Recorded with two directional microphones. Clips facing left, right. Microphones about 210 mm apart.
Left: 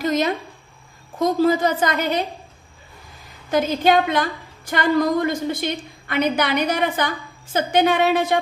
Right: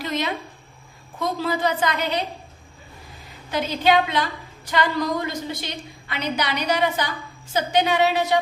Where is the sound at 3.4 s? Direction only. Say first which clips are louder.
Left 3 dB; 45° left (ahead or behind).